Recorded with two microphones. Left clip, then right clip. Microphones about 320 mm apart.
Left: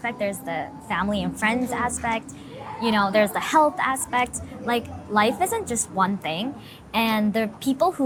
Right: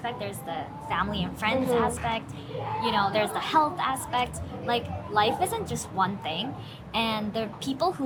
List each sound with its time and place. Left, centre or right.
0.0 s a woman's voice: left